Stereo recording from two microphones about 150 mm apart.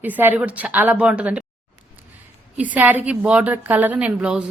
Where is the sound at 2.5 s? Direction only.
10° right (ahead or behind).